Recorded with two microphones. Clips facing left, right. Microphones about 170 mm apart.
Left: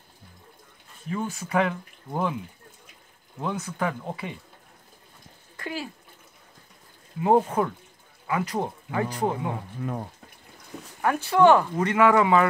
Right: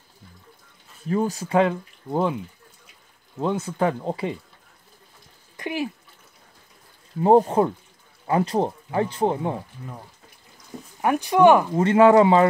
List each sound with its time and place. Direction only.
1.1 s speech: 35° right (ahead or behind)
3.3 s speech: 25° right (ahead or behind)
5.6 s speech: 20° right (ahead or behind)
7.2 s speech: 35° right (ahead or behind)
11.0 s speech: 15° right (ahead or behind)
11.7 s speech: 25° right (ahead or behind)